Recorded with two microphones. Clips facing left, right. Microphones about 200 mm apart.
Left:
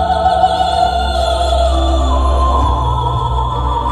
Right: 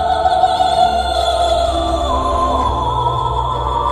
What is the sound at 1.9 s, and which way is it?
Music, 30° left (ahead or behind).